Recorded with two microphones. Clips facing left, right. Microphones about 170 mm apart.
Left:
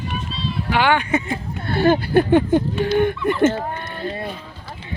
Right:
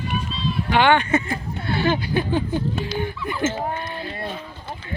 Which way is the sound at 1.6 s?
55° left (ahead or behind).